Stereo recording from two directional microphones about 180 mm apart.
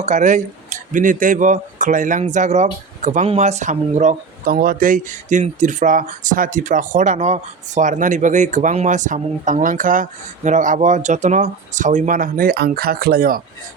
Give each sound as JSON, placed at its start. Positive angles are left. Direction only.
{"t": 0.0, "sound": "speech", "side_deg": -40}